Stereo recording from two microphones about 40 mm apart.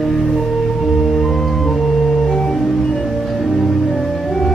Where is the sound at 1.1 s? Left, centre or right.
Centre.